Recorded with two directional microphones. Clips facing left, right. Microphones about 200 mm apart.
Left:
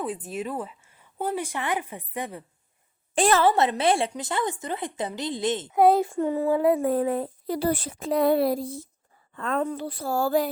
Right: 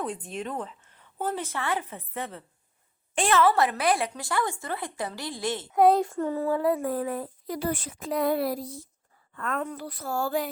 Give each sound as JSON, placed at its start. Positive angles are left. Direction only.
{"t": 0.3, "sound": "a woman's voice", "side_deg": 5}
{"t": 3.2, "sound": "a woman's voice", "side_deg": 35}
{"t": 3.5, "sound": "a woman's voice", "side_deg": 25}
{"t": 5.7, "sound": "speech", "side_deg": 5}
{"t": 6.1, "sound": "a woman's voice", "side_deg": 15}